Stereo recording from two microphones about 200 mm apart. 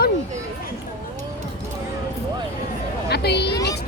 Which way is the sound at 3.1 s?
55° left (ahead or behind).